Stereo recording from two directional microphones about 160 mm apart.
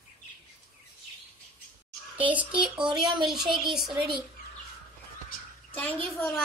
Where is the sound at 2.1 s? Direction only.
10° right (ahead or behind).